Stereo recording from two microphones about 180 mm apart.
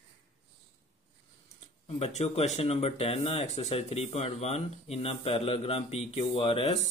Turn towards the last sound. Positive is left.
turn(degrees=30)  # may be behind; listen again after turning